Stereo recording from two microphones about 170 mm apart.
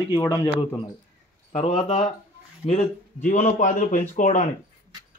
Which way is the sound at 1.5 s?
40° left (ahead or behind).